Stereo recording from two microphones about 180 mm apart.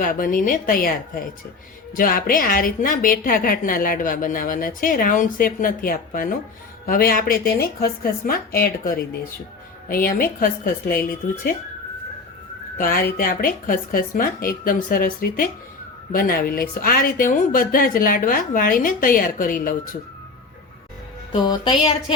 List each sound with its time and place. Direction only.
0.0 s a woman's voice: 50° left (ahead or behind)
12.7 s a woman's voice: 50° left (ahead or behind)
21.4 s speech: 25° left (ahead or behind)